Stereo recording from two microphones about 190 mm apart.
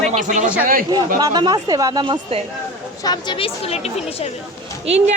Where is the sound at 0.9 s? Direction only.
20° right (ahead or behind).